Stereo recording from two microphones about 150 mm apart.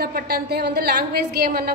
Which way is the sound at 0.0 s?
85° right.